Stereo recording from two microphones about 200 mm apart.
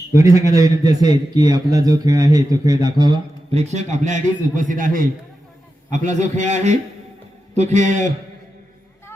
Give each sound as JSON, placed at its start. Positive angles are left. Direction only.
{"t": 0.1, "sound": "a man's voice", "side_deg": -15}
{"t": 3.5, "sound": "a man's voice", "side_deg": -35}